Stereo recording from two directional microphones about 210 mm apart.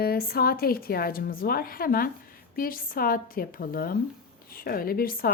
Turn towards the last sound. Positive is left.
turn(degrees=45)  # may be behind; listen again after turning